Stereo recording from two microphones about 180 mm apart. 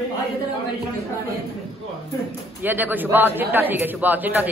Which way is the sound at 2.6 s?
10° right (ahead or behind).